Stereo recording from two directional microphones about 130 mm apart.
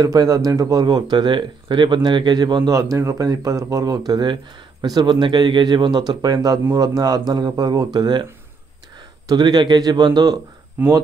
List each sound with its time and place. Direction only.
0.0 s speech: 30° right (ahead or behind)
9.3 s speech: 30° right (ahead or behind)
10.8 s speech: 15° right (ahead or behind)